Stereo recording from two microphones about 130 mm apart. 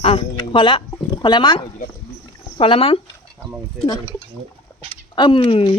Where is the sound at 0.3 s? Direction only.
40° left (ahead or behind).